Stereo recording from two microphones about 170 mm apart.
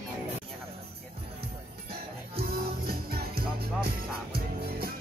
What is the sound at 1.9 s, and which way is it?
Music, 65° right (ahead or behind).